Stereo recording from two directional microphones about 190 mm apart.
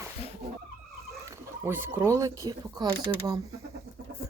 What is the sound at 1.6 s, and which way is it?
Speech, 15° right (ahead or behind).